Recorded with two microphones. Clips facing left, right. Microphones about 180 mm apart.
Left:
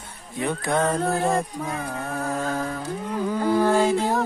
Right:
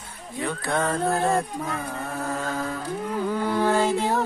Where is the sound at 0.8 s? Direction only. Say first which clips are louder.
Right 2 dB; centre (ahead or behind).